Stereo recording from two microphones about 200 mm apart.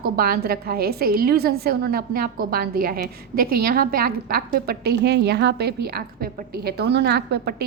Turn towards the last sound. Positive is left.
turn(degrees=-55)  # may be behind; listen again after turning